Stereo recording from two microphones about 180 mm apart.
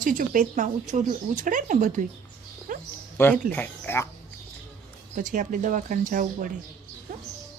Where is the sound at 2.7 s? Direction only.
50° right (ahead or behind).